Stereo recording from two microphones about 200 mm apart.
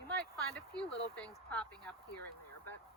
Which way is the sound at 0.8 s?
5° left (ahead or behind).